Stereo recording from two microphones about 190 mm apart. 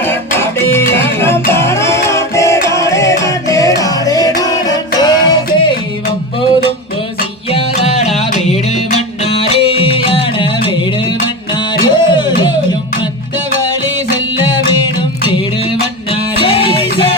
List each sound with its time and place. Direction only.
0.0 s music: 10° left (ahead or behind)
7.5 s music: 35° left (ahead or behind)
11.8 s music: 25° left (ahead or behind)
16.4 s music: 30° left (ahead or behind)